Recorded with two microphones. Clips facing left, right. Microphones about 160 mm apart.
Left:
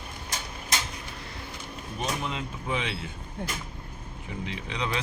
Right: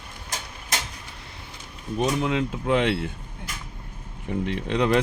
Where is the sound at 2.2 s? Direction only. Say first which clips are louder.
Right 9 dB; 80° right; by 3.0 s 65° right (ahead or behind).